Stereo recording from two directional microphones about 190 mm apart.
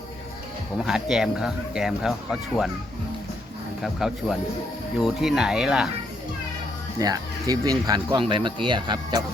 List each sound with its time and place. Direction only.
0.9 s speech: centre (ahead or behind)
3.8 s speech: centre (ahead or behind)
7.0 s speech: 20° right (ahead or behind)